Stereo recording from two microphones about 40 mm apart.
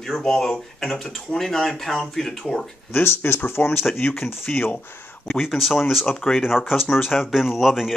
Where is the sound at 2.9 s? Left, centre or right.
Left.